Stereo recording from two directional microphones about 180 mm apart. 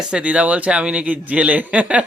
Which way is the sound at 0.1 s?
5° right (ahead or behind).